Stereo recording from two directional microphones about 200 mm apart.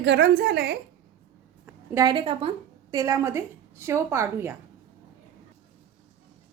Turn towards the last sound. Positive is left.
turn(degrees=-10)  # may be behind; listen again after turning